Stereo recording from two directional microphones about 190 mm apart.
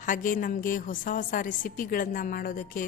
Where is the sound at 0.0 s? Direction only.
45° left (ahead or behind).